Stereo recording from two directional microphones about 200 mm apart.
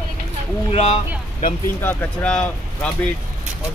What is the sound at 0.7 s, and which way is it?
Speech, 35° left (ahead or behind).